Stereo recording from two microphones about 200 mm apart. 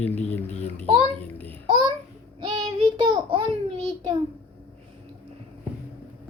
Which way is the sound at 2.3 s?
25° right (ahead or behind).